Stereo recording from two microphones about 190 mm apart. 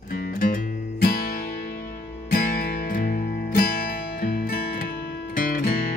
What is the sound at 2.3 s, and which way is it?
Music, 50° left (ahead or behind).